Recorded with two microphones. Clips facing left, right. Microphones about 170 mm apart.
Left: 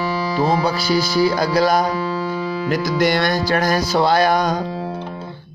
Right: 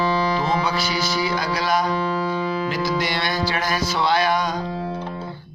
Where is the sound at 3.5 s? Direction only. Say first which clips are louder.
Left 6 dB; 40° left (ahead or behind).